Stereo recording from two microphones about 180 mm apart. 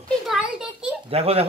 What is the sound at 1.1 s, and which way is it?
Speech, 35° right (ahead or behind).